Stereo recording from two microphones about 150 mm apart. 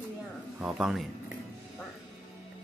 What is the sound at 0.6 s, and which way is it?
Speech, centre (ahead or behind).